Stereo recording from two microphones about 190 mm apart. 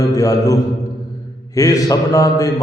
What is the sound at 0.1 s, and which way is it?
Mantra, 20° left (ahead or behind).